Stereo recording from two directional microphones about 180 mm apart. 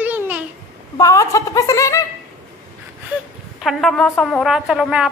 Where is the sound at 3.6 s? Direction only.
Centre (ahead or behind).